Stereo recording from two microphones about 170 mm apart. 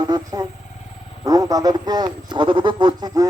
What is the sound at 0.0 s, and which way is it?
A man's voice, 20° right (ahead or behind).